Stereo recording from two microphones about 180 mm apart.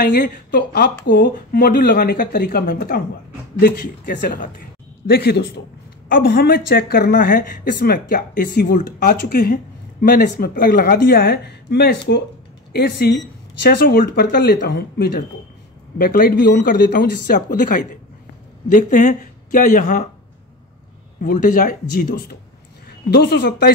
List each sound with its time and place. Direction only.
0.0 s speech: 50° left (ahead or behind)
21.2 s speech: 50° left (ahead or behind); by 23.7 s 75° left (ahead or behind)